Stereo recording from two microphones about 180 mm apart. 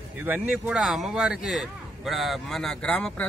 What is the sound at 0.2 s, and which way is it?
Speech, 10° right (ahead or behind).